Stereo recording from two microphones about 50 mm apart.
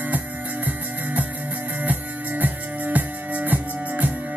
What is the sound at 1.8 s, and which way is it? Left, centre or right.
Music, right.